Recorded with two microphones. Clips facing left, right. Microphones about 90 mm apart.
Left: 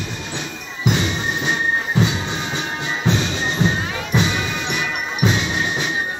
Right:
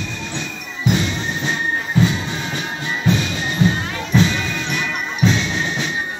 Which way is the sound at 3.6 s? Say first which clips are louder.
Right 5 dB; 15° left (ahead or behind).